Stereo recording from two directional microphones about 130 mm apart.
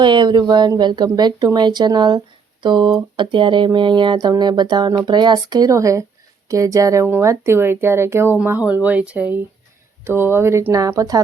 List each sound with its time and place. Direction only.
0.0 s speech: 35° right (ahead or behind)